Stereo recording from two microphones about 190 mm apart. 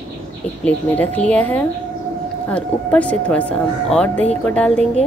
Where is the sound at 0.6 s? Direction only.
10° left (ahead or behind).